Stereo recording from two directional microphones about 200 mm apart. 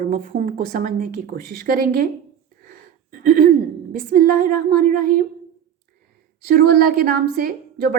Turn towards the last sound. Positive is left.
turn(degrees=-45)  # may be behind; listen again after turning